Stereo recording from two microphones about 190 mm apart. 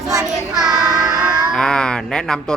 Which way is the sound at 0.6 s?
Centre (ahead or behind).